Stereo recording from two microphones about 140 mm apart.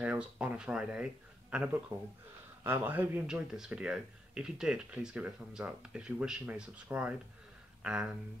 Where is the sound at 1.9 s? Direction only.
20° right (ahead or behind).